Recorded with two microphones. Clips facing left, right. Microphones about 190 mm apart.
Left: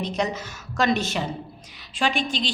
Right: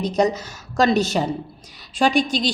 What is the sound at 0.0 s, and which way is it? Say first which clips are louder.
A woman's voice: right 7 dB; 40° right (ahead or behind).